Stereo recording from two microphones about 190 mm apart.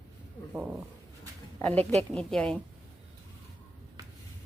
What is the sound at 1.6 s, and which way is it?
Speech, 10° left (ahead or behind).